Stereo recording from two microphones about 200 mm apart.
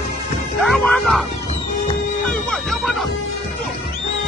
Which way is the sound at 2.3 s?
Centre (ahead or behind).